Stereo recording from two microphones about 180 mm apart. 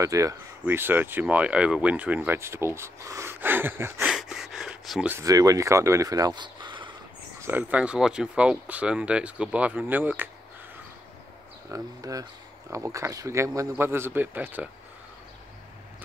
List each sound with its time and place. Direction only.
0.0 s speech: 15° right (ahead or behind)
5.1 s speech: 20° right (ahead or behind)
7.4 s speech: 10° right (ahead or behind)
11.7 s speech: 20° right (ahead or behind)